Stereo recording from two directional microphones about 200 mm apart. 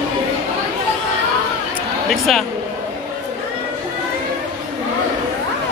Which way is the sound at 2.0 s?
Centre (ahead or behind).